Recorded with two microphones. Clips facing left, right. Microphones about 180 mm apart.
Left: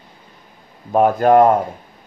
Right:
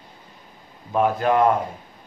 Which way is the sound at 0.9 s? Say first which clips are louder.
Left 7 dB; 50° left (ahead or behind).